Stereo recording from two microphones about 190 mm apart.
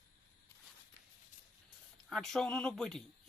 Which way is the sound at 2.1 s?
Centre (ahead or behind).